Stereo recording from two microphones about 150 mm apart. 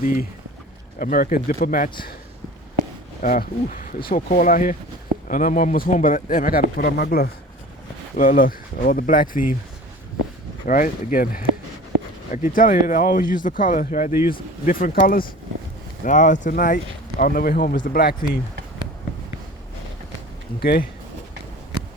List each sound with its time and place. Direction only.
0.0 s speech: 65° left (ahead or behind)
3.2 s speech: 65° left (ahead or behind); by 7.3 s 90° left
8.1 s speech: 70° left (ahead or behind)
10.7 s speech: 65° left (ahead or behind)
16.0 s speech: 55° left (ahead or behind); by 18.3 s 85° left
20.6 s speech: 90° left